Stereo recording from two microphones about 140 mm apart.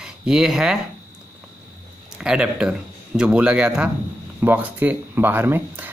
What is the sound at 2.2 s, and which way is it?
Speech, 5° right (ahead or behind).